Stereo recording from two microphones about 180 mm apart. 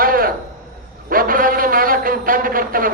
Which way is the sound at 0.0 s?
55° right (ahead or behind).